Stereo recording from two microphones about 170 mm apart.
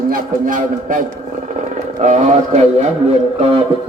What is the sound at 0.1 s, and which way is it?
A man's voice, 50° right (ahead or behind).